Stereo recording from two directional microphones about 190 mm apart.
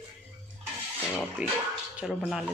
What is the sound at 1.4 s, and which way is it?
Speech, 10° right (ahead or behind).